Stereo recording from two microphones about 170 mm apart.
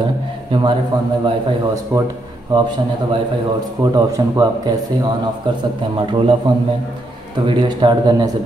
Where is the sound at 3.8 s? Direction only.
20° right (ahead or behind).